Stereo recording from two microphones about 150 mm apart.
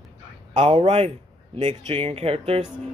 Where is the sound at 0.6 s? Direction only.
40° right (ahead or behind).